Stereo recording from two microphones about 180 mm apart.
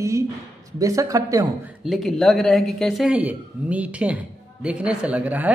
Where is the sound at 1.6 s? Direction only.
5° right (ahead or behind).